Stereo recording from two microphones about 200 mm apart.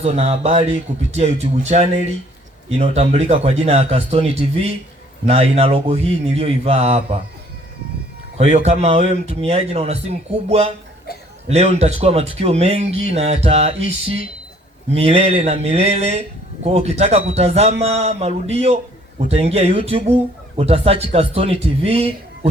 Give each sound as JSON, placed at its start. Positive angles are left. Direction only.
{"t": 0.0, "sound": "speech", "side_deg": -30}
{"t": 8.4, "sound": "speech", "side_deg": -30}
{"t": 14.9, "sound": "speech", "side_deg": -30}